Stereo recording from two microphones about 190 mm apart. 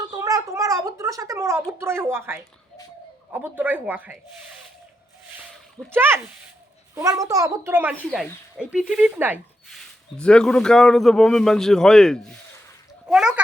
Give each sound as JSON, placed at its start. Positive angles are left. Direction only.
{"t": 0.2, "sound": "speech", "side_deg": -15}
{"t": 5.9, "sound": "speech", "side_deg": -10}
{"t": 9.6, "sound": "a man's voice", "side_deg": 5}